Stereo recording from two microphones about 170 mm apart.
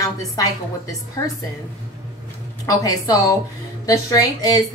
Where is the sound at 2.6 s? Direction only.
20° left (ahead or behind).